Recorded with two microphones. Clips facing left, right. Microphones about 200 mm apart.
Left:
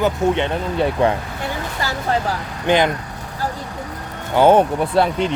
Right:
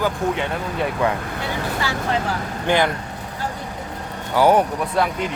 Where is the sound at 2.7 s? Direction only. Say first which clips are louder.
Left 3 dB; 20° left (ahead or behind).